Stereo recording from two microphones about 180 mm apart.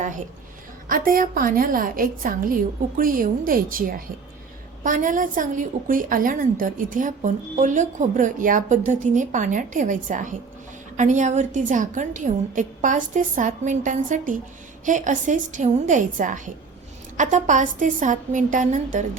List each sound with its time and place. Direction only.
0.9 s a woman's voice: 50° right (ahead or behind)